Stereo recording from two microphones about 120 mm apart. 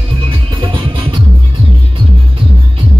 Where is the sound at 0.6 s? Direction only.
45° right (ahead or behind).